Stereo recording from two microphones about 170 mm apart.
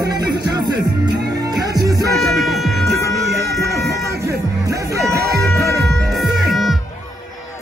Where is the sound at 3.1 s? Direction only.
70° right (ahead or behind).